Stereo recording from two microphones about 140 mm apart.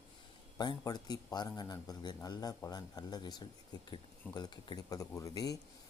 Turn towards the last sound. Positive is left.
turn(degrees=25)  # may be behind; listen again after turning